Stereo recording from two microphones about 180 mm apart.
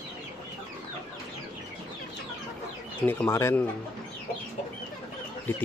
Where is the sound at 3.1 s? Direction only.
10° left (ahead or behind).